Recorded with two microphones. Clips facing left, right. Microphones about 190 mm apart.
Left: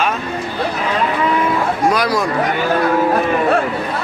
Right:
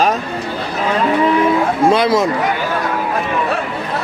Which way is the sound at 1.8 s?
25° right (ahead or behind).